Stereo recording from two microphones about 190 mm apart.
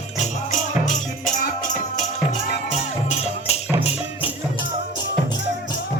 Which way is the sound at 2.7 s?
35° left (ahead or behind).